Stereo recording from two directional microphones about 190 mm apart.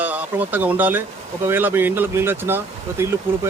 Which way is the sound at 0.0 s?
10° right (ahead or behind).